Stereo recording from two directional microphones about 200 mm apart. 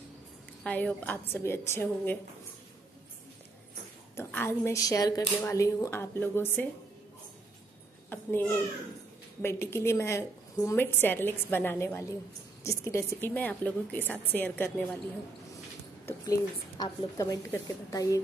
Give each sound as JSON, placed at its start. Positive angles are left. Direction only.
{"t": 0.7, "sound": "a woman's voice", "side_deg": 10}
{"t": 4.2, "sound": "a woman's voice", "side_deg": 10}
{"t": 8.1, "sound": "a child's voice", "side_deg": 10}
{"t": 16.1, "sound": "a woman's voice", "side_deg": 20}